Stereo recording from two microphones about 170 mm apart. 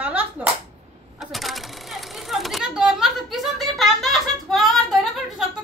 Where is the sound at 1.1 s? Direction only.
Centre (ahead or behind).